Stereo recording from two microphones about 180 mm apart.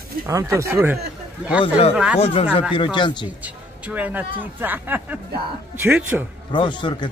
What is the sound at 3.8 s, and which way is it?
Speech, 10° right (ahead or behind).